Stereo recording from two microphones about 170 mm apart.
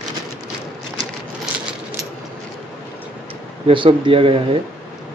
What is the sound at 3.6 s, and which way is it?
Speech, 30° right (ahead or behind).